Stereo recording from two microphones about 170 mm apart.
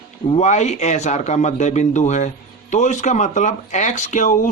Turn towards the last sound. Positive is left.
turn(degrees=50)  # may be behind; listen again after turning